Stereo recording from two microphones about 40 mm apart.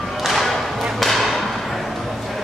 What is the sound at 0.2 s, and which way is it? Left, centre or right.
Thump, centre.